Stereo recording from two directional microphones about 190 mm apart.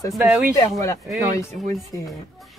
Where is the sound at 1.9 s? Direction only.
20° left (ahead or behind).